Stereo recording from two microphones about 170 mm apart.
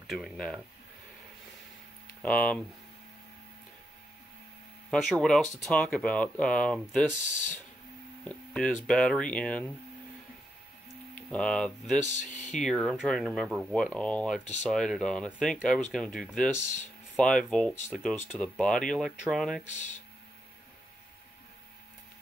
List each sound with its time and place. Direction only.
0.0 s speech: centre (ahead or behind)
2.2 s speech: 10° left (ahead or behind)
4.9 s speech: 5° left (ahead or behind)
8.2 s speech: 5° left (ahead or behind)
11.1 s speech: 5° left (ahead or behind)
12.1 s speech: 45° left (ahead or behind)
12.5 s speech: centre (ahead or behind)
19.6 s speech: 45° left (ahead or behind)